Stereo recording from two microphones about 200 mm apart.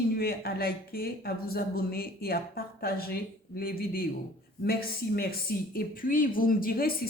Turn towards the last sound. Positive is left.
turn(degrees=50)  # may be behind; listen again after turning